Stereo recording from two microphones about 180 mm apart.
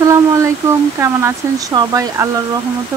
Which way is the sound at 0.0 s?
15° right (ahead or behind).